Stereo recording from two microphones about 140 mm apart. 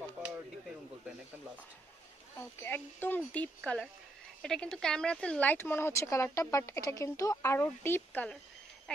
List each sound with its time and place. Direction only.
2.6 s speech: 15° left (ahead or behind)